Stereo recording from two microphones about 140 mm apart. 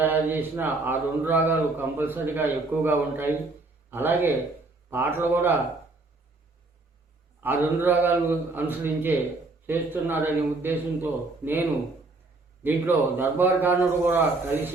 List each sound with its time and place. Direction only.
0.0 s a man's voice: 15° right (ahead or behind)
7.4 s a man's voice: 15° right (ahead or behind)
12.6 s a man's voice: 15° right (ahead or behind)